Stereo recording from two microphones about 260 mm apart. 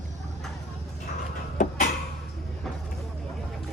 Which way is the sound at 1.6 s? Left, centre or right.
Left.